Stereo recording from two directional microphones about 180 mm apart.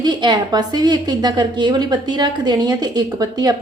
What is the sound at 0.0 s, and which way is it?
A woman's voice, 25° right (ahead or behind).